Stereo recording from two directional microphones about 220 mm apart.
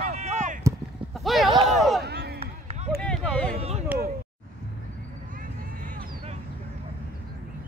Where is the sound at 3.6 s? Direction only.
30° right (ahead or behind).